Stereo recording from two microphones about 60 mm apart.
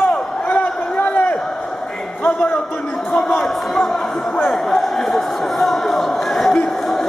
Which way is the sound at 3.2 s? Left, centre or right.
Centre.